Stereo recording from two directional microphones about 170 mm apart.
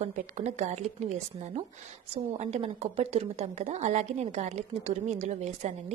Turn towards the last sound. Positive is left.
turn(degrees=-40)  # may be behind; listen again after turning